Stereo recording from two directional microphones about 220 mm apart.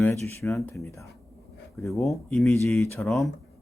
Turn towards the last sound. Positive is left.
turn(degrees=0)  # may be behind; listen again after turning